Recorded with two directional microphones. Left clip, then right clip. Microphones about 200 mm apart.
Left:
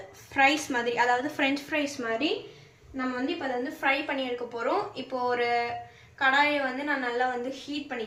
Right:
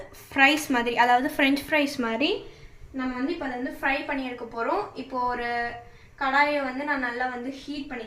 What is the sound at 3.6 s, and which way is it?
Speech, 5° left (ahead or behind).